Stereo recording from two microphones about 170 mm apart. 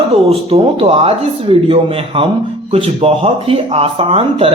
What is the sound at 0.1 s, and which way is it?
Speech, 35° right (ahead or behind).